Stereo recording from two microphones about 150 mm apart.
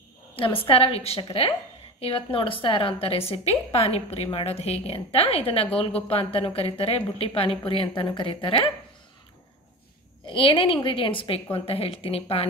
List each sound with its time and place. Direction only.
0.4 s a woman's voice: 35° left (ahead or behind)
10.2 s a woman's voice: 35° left (ahead or behind)